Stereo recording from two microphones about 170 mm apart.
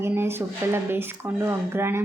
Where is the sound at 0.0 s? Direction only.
15° right (ahead or behind).